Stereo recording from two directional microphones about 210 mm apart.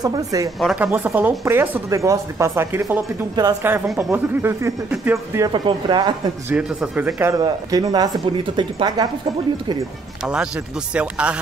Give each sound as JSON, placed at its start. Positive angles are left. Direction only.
{"t": 0.0, "sound": "speech", "side_deg": -15}
{"t": 0.6, "sound": "speech", "side_deg": 0}
{"t": 6.5, "sound": "speech", "side_deg": -5}
{"t": 10.2, "sound": "speech", "side_deg": -5}